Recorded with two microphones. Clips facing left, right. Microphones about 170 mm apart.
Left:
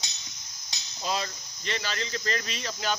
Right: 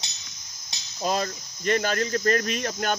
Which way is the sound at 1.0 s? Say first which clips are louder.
Right 5 dB; 50° right (ahead or behind).